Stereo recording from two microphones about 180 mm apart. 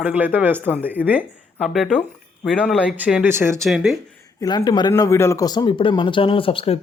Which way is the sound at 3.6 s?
Centre (ahead or behind).